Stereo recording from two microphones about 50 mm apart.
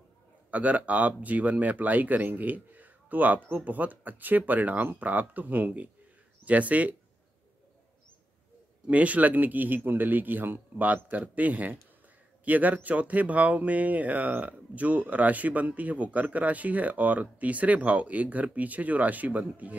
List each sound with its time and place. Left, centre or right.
0.5 s speech: right
8.8 s speech: right